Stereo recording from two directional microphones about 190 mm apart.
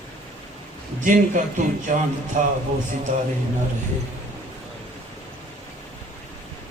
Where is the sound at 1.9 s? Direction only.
40° right (ahead or behind).